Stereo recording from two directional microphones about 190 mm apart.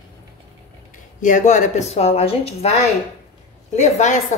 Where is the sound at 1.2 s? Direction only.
40° left (ahead or behind).